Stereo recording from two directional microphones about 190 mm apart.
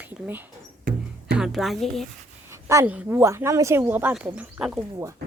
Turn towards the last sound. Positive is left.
turn(degrees=-15)  # may be behind; listen again after turning